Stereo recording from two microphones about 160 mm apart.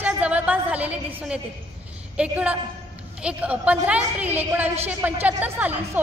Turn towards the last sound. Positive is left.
turn(degrees=-10)  # may be behind; listen again after turning